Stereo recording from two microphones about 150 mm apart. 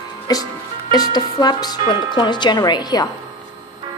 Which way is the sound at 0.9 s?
25° left (ahead or behind).